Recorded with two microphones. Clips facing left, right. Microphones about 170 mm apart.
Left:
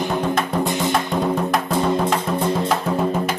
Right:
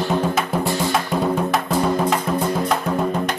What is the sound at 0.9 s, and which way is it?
Music, centre (ahead or behind).